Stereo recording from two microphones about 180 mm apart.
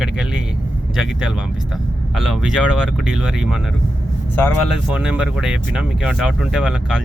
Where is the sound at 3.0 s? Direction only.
5° right (ahead or behind).